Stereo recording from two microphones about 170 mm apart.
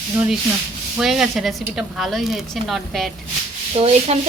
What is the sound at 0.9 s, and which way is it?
A woman's voice, centre (ahead or behind).